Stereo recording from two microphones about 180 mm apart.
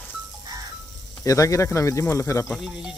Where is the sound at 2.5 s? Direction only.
5° right (ahead or behind).